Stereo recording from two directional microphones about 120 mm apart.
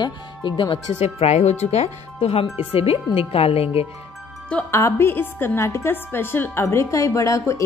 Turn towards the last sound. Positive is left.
turn(degrees=25)  # may be behind; listen again after turning